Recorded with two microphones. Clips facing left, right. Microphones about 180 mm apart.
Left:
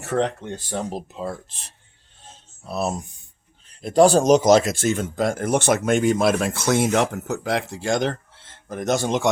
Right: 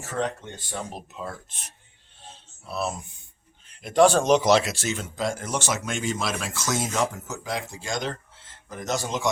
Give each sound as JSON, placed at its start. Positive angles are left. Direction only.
{"t": 0.0, "sound": "speech", "side_deg": 60}
{"t": 0.5, "sound": "speech", "side_deg": 30}
{"t": 2.6, "sound": "speech", "side_deg": 40}